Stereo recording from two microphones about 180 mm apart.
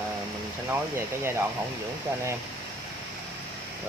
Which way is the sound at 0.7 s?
15° right (ahead or behind).